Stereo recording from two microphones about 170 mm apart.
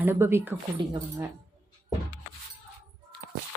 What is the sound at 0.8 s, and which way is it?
Speech, 25° right (ahead or behind).